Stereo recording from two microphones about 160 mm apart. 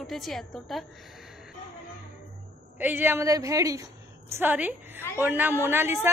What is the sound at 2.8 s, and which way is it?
A woman's voice, 10° right (ahead or behind).